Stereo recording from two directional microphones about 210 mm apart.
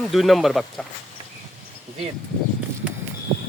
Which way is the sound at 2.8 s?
5° right (ahead or behind).